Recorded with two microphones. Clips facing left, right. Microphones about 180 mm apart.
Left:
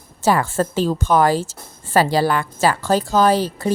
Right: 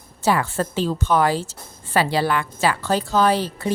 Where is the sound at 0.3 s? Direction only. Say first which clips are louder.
Left 3 dB; 45° left (ahead or behind).